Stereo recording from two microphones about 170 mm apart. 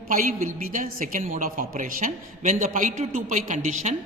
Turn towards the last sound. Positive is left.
turn(degrees=-45)  # may be behind; listen again after turning